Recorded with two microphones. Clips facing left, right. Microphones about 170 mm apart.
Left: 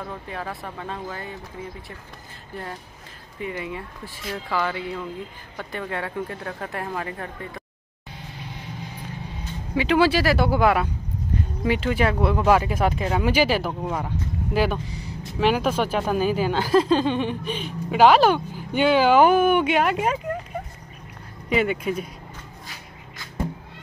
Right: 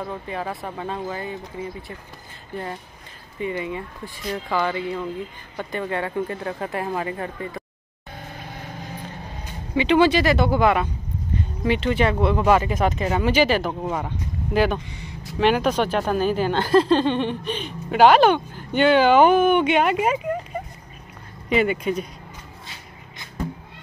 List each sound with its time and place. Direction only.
0.0 s speech: 5° right (ahead or behind)
2.5 s speech: centre (ahead or behind)
9.8 s speech: 5° left (ahead or behind)
13.7 s speech: 5° right (ahead or behind)
14.5 s speech: 5° left (ahead or behind)
14.9 s vehicle: 35° left (ahead or behind)
15.2 s speech: centre (ahead or behind)
21.5 s speech: centre (ahead or behind)